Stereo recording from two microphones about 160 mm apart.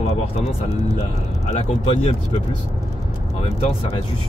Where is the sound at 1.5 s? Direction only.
40° left (ahead or behind).